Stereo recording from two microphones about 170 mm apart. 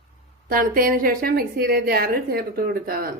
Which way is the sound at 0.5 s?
55° right (ahead or behind).